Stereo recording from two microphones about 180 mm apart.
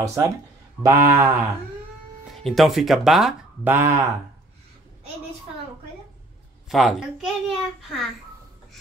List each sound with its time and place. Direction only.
0.0 s a sound: 15° right (ahead or behind)
2.3 s speech: centre (ahead or behind)
6.7 s a child's voice: centre (ahead or behind)